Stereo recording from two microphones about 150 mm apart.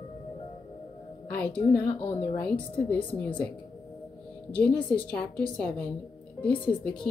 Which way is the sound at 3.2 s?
10° left (ahead or behind).